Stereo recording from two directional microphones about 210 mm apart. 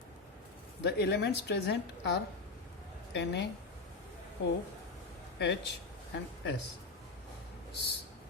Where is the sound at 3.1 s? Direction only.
55° left (ahead or behind).